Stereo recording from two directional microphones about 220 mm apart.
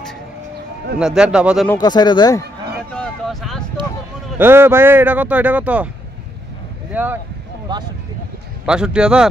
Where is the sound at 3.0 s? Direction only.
Centre (ahead or behind).